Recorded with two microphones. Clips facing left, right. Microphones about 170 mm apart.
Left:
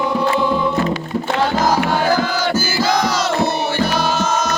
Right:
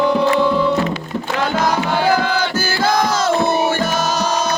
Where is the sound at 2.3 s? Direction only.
60° right (ahead or behind).